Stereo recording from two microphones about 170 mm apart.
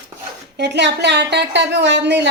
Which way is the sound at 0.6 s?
85° right.